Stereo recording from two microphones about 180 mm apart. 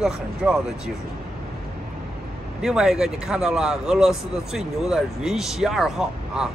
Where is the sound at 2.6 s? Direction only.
5° right (ahead or behind).